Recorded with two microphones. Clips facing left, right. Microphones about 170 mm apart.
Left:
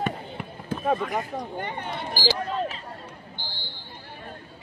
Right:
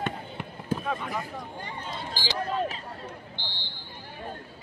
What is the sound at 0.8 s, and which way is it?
Speech, 45° left (ahead or behind).